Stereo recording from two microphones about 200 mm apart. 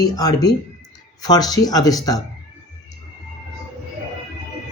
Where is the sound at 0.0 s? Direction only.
20° left (ahead or behind).